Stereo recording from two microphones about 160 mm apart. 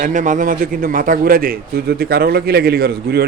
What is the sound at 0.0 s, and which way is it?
A man's voice, 55° right (ahead or behind).